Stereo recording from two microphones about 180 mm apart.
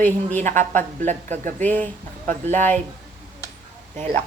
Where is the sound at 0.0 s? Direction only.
10° left (ahead or behind).